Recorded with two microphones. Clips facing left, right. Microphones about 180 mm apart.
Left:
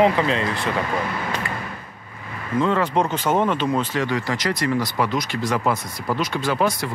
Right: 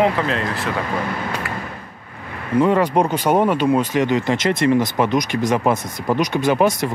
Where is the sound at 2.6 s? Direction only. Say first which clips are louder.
Right 4 dB; 15° right (ahead or behind).